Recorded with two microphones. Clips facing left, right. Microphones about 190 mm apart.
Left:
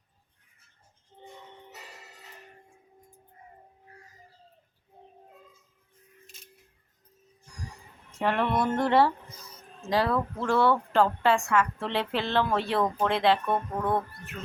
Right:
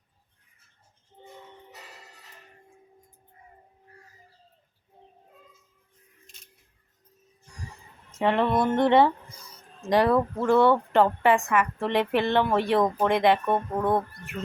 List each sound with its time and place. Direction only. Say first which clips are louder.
8.1 s speech: right 3 dB; 20° right (ahead or behind)